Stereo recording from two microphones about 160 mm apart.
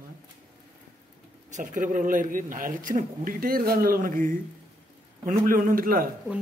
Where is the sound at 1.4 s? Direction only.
50° right (ahead or behind).